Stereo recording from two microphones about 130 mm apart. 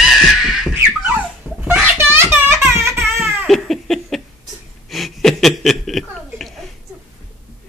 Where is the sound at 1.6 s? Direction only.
15° right (ahead or behind).